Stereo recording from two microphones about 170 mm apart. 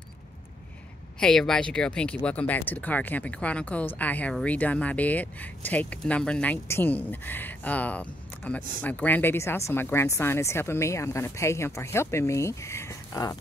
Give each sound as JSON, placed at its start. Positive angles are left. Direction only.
{"t": 1.2, "sound": "speech", "side_deg": 5}